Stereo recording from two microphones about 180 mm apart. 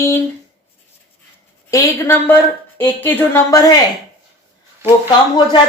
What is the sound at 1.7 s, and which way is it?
A woman's voice, 15° left (ahead or behind).